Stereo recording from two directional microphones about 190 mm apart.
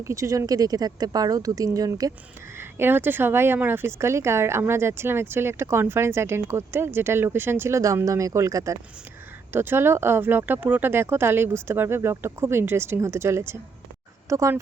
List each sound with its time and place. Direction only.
0.0 s speech: 15° right (ahead or behind)